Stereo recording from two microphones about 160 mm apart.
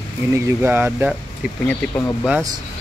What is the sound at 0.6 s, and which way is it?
Speech, 10° right (ahead or behind).